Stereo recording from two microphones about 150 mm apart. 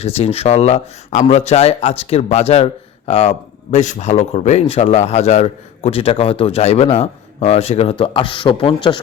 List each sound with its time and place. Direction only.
0.0 s speech: 45° left (ahead or behind)